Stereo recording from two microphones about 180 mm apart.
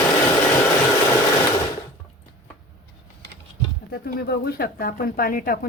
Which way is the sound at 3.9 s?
60° left (ahead or behind).